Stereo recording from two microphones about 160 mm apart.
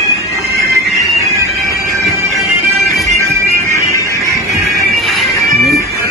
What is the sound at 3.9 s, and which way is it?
Music, 20° left (ahead or behind).